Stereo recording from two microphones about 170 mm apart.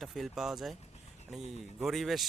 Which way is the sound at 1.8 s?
Centre (ahead or behind).